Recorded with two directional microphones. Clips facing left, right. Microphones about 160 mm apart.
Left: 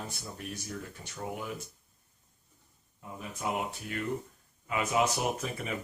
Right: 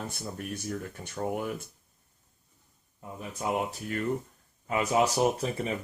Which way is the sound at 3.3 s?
40° right (ahead or behind).